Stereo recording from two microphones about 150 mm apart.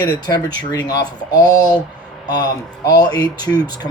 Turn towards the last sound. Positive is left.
turn(degrees=25)  # may be behind; listen again after turning